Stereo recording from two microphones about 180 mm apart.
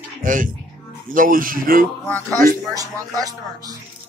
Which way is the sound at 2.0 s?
15° left (ahead or behind).